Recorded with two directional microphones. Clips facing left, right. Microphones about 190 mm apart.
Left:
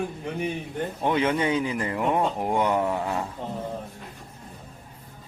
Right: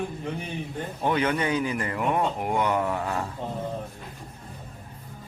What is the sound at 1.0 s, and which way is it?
Speech, 20° left (ahead or behind).